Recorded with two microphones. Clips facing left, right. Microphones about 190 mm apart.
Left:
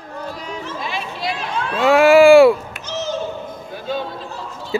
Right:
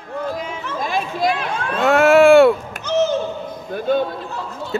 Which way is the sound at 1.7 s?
Centre (ahead or behind).